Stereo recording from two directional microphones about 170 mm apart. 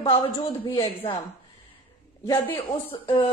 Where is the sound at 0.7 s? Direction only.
30° left (ahead or behind).